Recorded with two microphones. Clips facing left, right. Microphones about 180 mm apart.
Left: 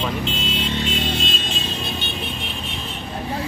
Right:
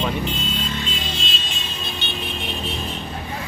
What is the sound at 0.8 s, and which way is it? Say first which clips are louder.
Vehicle: left 6 dB; 65° left (ahead or behind).